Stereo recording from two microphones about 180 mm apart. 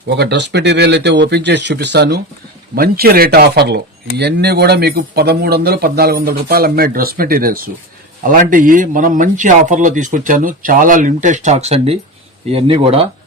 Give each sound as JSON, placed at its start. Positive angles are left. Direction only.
{"t": 0.1, "sound": "speech", "side_deg": -70}
{"t": 2.7, "sound": "a man's voice", "side_deg": -55}